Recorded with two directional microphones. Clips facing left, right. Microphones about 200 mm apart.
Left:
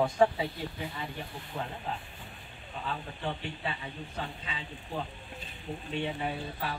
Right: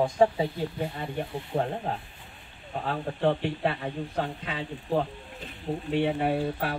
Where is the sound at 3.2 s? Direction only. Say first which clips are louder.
Right 13 dB; 70° right (ahead or behind).